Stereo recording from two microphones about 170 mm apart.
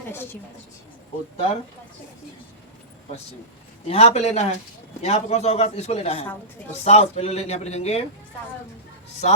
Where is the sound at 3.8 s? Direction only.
35° left (ahead or behind).